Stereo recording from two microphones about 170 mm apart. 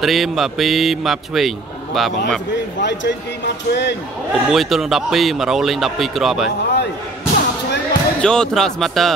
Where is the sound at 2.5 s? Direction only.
90° left.